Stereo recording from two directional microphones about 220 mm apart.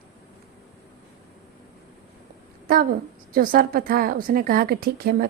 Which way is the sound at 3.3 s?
40° right (ahead or behind).